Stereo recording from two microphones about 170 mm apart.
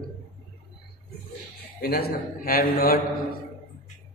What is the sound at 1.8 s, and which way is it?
A man's voice, 65° left (ahead or behind).